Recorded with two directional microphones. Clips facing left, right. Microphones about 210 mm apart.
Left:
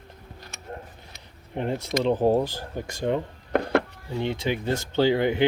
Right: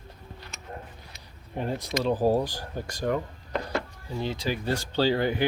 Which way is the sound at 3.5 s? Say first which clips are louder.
Left 8 dB; 60° left (ahead or behind).